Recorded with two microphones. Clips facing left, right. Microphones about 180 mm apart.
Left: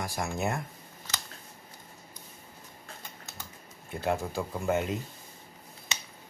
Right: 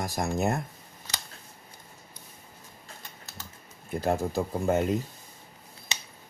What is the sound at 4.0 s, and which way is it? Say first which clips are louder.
Speech: right 3 dB; 40° right (ahead or behind).